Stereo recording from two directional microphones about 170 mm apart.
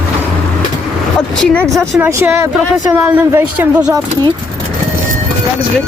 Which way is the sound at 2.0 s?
15° right (ahead or behind).